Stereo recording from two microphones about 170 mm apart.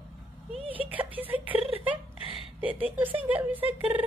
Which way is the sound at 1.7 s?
10° right (ahead or behind).